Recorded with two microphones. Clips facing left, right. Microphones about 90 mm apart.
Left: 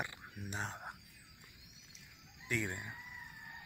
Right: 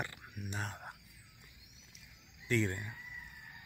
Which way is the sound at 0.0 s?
20° left (ahead or behind).